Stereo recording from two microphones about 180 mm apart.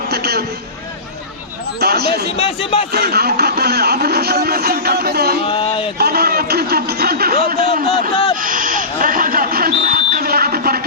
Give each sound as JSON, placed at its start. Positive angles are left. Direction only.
{"t": 0.1, "sound": "a sound", "side_deg": -60}
{"t": 1.8, "sound": "speech", "side_deg": -60}
{"t": 2.3, "sound": "speech", "side_deg": 30}
{"t": 2.9, "sound": "speech", "side_deg": -60}
{"t": 5.5, "sound": "speech", "side_deg": 30}
{"t": 6.0, "sound": "a man's voice", "side_deg": -60}
{"t": 7.3, "sound": "speech", "side_deg": 30}
{"t": 8.4, "sound": "a sound", "side_deg": -50}